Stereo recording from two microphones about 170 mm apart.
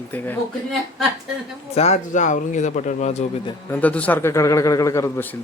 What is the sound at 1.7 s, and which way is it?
Speech, 40° left (ahead or behind).